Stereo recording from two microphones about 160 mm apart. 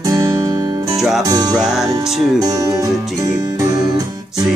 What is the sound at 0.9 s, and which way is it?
Music, centre (ahead or behind).